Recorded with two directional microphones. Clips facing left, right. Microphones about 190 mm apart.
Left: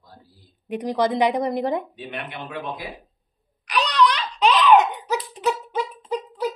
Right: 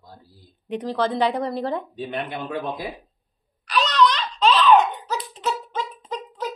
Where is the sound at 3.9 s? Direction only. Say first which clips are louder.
Even; 15° left (ahead or behind).